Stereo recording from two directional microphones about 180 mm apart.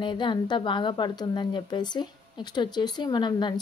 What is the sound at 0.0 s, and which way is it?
A woman's voice, 25° left (ahead or behind).